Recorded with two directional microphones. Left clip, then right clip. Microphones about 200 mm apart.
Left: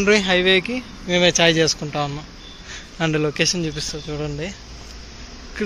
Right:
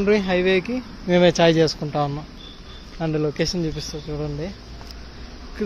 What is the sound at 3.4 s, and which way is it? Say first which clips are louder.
Speech: left 3 dB; 10° right (ahead or behind).